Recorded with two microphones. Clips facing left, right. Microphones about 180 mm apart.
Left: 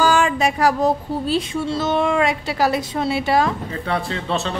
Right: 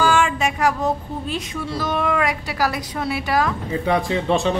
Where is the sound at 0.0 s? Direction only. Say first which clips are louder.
Left 2 dB; 40° left (ahead or behind).